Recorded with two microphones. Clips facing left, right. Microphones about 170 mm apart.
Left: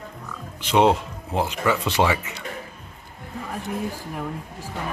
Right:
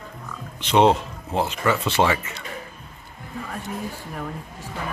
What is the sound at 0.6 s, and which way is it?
Speech, 10° left (ahead or behind).